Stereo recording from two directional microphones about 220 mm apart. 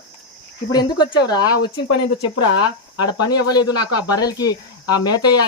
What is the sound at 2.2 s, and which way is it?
Speech, 90° left.